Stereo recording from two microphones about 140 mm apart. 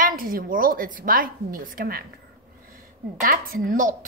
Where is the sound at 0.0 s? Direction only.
90° right.